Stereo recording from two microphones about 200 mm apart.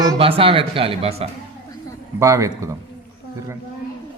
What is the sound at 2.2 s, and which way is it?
Speech, 15° right (ahead or behind).